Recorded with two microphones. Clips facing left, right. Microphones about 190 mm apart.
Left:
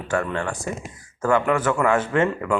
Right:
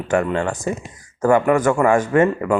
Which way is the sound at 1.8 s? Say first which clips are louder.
Right 4 dB; 10° right (ahead or behind).